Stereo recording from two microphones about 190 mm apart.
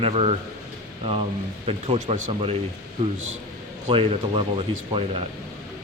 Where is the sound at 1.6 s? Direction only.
30° right (ahead or behind).